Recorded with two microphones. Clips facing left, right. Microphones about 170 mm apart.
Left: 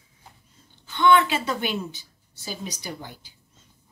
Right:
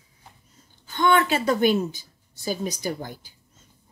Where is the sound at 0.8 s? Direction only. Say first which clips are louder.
Left 2 dB; 45° right (ahead or behind).